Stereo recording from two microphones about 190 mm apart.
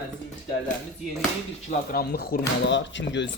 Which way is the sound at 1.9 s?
50° left (ahead or behind).